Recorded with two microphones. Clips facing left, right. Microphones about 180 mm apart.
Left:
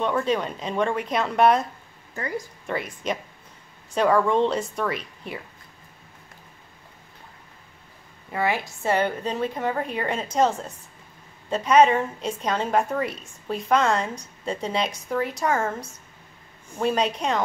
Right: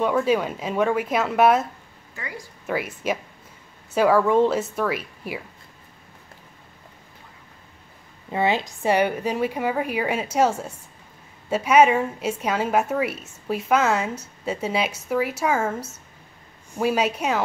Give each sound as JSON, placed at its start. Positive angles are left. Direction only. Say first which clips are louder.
{"t": 0.0, "sound": "a woman's voice", "louder": "right 3 dB", "side_deg": -5}
{"t": 8.3, "sound": "a woman's voice", "louder": "right 3 dB", "side_deg": -20}